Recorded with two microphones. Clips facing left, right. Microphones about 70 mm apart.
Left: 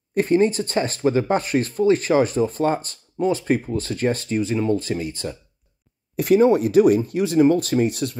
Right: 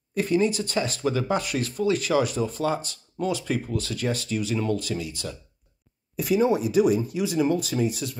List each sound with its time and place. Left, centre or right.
0.1 s speech: left
6.1 s speech: left